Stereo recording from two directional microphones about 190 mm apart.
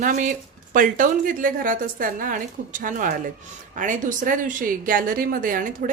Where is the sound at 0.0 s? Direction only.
40° right (ahead or behind).